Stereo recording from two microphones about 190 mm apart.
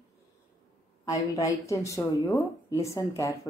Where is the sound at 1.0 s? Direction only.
15° left (ahead or behind).